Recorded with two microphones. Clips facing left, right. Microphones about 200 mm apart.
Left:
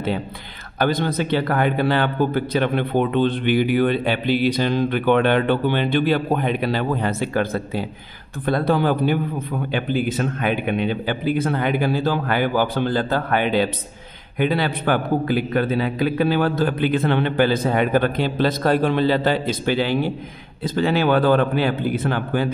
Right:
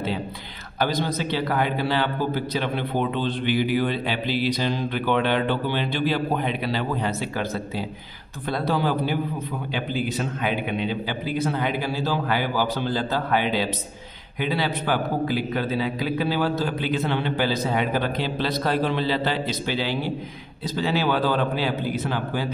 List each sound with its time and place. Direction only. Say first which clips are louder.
0.7 s a man's voice: left 4 dB; 55° left (ahead or behind)